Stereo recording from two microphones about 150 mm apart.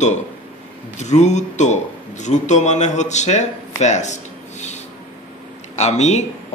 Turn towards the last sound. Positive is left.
turn(degrees=50)  # may be behind; listen again after turning